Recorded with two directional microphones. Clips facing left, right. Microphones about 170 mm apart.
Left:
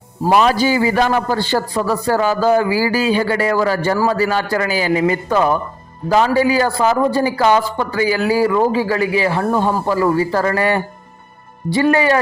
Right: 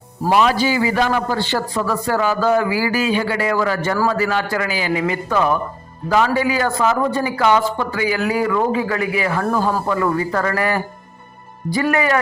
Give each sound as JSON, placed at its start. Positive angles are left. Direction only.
{"t": 0.3, "sound": "a man's voice", "side_deg": 40}